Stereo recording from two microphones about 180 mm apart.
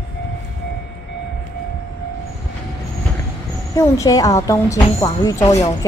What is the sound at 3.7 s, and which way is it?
A woman's voice, 20° left (ahead or behind).